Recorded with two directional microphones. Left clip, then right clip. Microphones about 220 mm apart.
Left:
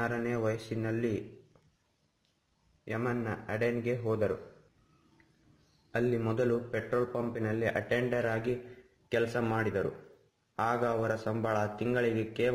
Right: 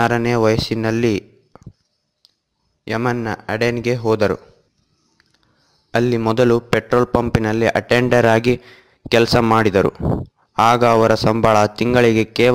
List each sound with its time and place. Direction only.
0.0 s a man's voice: 45° right (ahead or behind)
2.8 s a man's voice: 45° right (ahead or behind)
5.9 s a man's voice: 45° right (ahead or behind)
10.5 s a man's voice: 45° right (ahead or behind)